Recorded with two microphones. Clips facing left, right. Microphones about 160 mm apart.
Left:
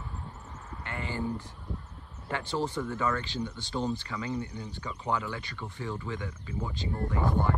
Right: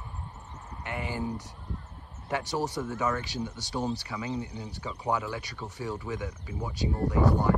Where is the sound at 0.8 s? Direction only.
15° right (ahead or behind).